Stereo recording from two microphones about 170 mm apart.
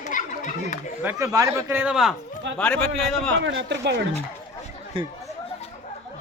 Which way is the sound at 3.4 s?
90° right.